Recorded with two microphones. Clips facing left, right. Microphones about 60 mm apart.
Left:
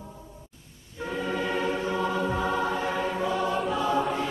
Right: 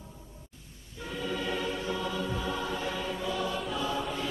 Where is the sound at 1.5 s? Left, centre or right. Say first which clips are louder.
Left 5 dB; left.